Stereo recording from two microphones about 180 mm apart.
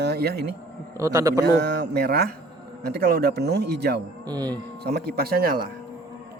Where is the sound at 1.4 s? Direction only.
70° right (ahead or behind).